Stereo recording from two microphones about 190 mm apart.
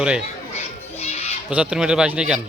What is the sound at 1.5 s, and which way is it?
Speech, 5° right (ahead or behind).